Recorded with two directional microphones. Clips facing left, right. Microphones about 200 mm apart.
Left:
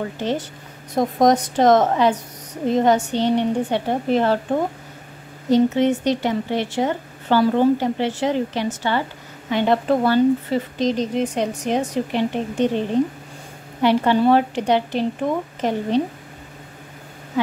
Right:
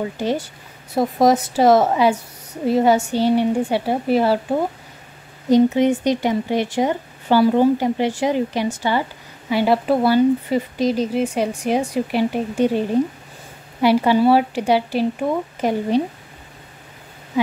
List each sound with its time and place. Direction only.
0.0 s a woman's voice: 10° right (ahead or behind)